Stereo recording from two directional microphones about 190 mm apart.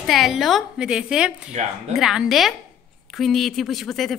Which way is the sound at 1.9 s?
Centre (ahead or behind).